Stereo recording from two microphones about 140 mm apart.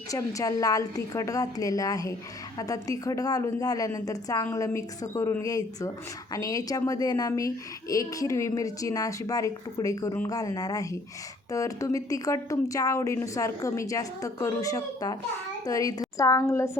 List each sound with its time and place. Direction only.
0.1 s a child's voice: 25° left (ahead or behind)